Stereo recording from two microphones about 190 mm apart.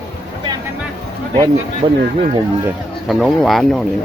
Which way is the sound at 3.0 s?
Centre (ahead or behind).